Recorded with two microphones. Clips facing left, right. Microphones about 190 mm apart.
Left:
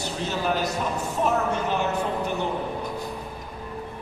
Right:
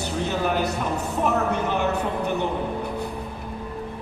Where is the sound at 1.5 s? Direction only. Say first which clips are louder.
Right 2 dB; 60° right (ahead or behind).